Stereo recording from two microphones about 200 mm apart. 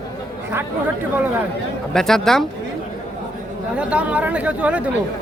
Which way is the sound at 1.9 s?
Centre (ahead or behind).